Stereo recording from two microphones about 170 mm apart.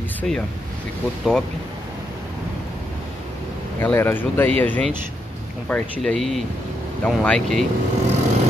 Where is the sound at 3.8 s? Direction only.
10° left (ahead or behind).